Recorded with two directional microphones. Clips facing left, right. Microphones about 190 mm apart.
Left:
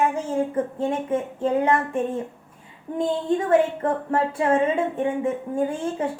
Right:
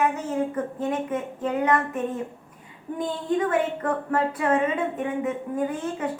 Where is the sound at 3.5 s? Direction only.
25° left (ahead or behind).